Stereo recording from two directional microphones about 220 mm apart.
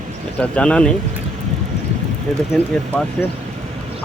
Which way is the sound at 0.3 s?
5° left (ahead or behind).